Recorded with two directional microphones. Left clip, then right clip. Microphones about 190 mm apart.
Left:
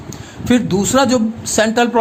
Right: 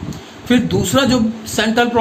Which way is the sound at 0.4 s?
55° left (ahead or behind).